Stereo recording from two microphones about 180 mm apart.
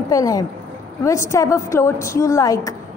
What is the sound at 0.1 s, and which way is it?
A woman's voice, 20° left (ahead or behind).